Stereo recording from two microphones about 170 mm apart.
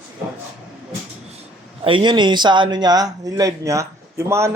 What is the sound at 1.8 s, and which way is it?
A man's voice, 30° right (ahead or behind).